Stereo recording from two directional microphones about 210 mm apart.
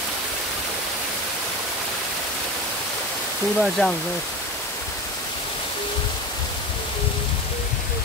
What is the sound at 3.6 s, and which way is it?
Speech, centre (ahead or behind).